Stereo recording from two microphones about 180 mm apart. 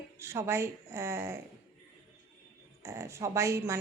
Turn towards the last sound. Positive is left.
turn(degrees=-15)  # may be behind; listen again after turning